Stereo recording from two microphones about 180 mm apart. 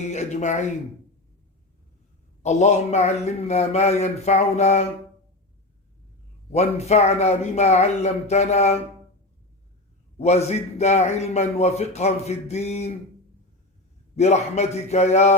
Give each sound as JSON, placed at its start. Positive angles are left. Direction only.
{"t": 0.0, "sound": "a man's voice", "side_deg": 40}
{"t": 2.4, "sound": "a man's voice", "side_deg": 40}
{"t": 6.5, "sound": "a man's voice", "side_deg": 35}
{"t": 10.2, "sound": "a man's voice", "side_deg": 35}
{"t": 14.2, "sound": "a man's voice", "side_deg": 40}